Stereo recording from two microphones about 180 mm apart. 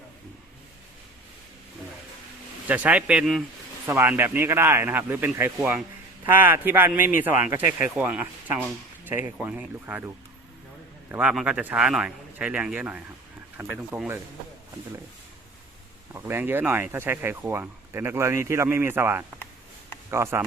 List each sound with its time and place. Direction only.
2.6 s speech: 10° right (ahead or behind)
11.1 s a man's voice: 5° right (ahead or behind)
16.1 s speech: 10° right (ahead or behind)